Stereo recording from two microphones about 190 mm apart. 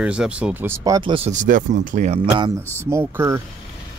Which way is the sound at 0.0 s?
5° right (ahead or behind).